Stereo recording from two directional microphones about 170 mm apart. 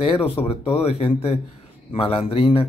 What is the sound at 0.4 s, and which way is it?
Speech, 35° left (ahead or behind).